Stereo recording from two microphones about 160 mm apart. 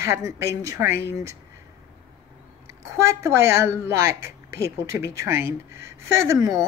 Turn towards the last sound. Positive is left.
turn(degrees=-20)  # may be behind; listen again after turning